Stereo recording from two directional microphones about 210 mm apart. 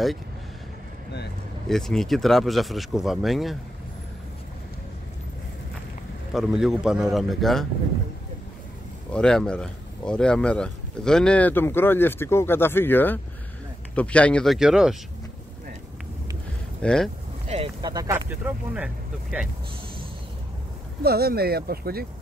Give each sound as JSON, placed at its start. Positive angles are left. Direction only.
{"t": 1.7, "sound": "speech", "side_deg": 0}
{"t": 6.3, "sound": "speech", "side_deg": 0}
{"t": 9.1, "sound": "speech", "side_deg": 5}
{"t": 16.8, "sound": "speech", "side_deg": 5}
{"t": 17.5, "sound": "speech", "side_deg": -25}
{"t": 21.0, "sound": "speech", "side_deg": -45}